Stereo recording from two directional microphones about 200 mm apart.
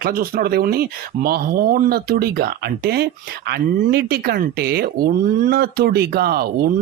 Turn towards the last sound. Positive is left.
turn(degrees=-50)  # may be behind; listen again after turning